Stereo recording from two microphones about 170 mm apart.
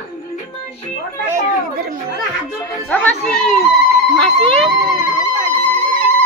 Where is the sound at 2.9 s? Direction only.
5° left (ahead or behind).